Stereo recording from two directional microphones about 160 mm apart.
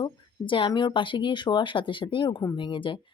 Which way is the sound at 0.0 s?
30° left (ahead or behind).